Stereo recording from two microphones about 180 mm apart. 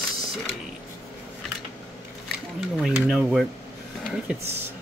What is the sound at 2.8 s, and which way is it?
Speech, 5° right (ahead or behind).